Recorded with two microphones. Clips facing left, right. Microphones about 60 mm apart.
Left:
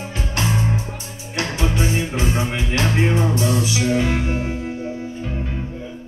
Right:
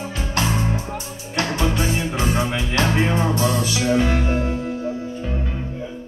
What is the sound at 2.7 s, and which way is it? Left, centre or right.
Music, right.